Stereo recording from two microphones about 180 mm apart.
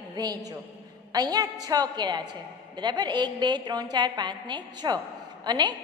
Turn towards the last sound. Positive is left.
turn(degrees=-25)  # may be behind; listen again after turning